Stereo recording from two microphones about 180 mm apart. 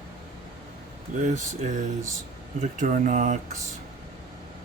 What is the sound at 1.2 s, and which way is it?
Speech, 45° right (ahead or behind).